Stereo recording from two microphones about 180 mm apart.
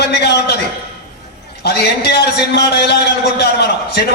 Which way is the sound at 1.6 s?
65° left (ahead or behind).